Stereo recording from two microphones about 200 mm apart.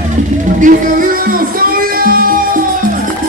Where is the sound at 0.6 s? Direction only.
45° right (ahead or behind).